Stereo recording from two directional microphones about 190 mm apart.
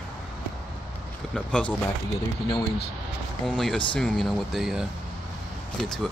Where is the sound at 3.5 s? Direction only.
5° left (ahead or behind).